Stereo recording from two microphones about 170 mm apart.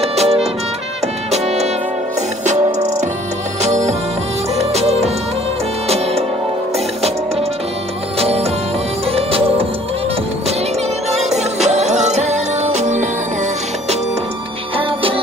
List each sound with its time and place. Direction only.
0.0 s music: 40° right (ahead or behind)
8.2 s music: 35° right (ahead or behind)
11.1 s music: 40° right (ahead or behind)
14.8 s music: 30° right (ahead or behind)